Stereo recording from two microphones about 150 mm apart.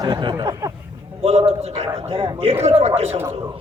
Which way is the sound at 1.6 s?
45° right (ahead or behind).